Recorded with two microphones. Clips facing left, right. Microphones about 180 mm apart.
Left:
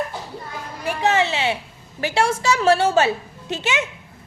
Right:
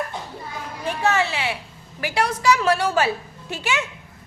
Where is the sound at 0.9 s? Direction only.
20° left (ahead or behind).